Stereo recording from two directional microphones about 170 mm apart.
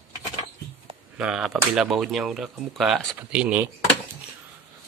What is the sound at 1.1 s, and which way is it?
Speech, 5° right (ahead or behind).